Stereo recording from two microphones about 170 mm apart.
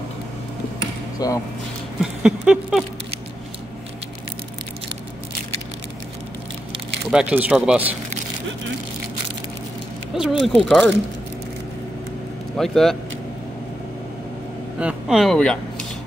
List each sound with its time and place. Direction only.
1.2 s speech: 20° left (ahead or behind)
2.0 s a sound: 5° right (ahead or behind)
7.1 s speech: 5° right (ahead or behind)
10.1 s speech: 5° right (ahead or behind)
12.5 s speech: centre (ahead or behind)
14.8 s speech: 5° right (ahead or behind)